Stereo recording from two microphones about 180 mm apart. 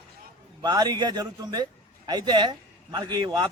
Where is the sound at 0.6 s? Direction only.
20° right (ahead or behind).